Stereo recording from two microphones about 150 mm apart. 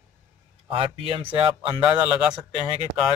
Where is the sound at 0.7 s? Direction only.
35° right (ahead or behind).